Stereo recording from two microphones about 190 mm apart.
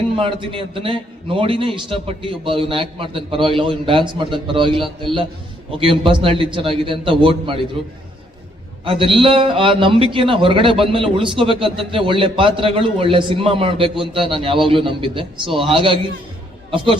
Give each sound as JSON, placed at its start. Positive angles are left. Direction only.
{"t": 0.2, "sound": "a man's voice", "side_deg": -25}
{"t": 5.8, "sound": "a man's voice", "side_deg": -25}
{"t": 8.8, "sound": "a man's voice", "side_deg": -30}